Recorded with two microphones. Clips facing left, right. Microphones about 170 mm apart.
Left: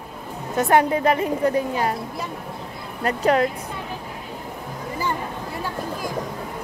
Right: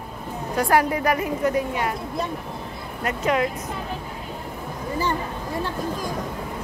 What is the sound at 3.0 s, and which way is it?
Speech, 35° left (ahead or behind).